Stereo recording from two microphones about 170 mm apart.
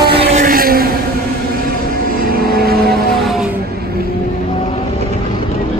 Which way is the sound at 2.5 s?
65° right (ahead or behind).